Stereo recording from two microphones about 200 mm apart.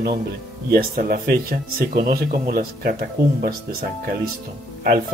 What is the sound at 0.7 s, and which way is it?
Speech, 50° right (ahead or behind).